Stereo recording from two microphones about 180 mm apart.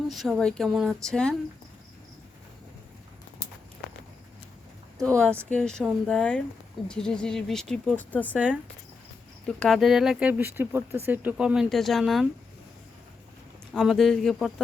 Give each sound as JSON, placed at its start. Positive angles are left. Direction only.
{"t": 0.1, "sound": "speech", "side_deg": 0}
{"t": 5.1, "sound": "speech", "side_deg": 5}
{"t": 9.5, "sound": "speech", "side_deg": 0}
{"t": 13.7, "sound": "speech", "side_deg": 0}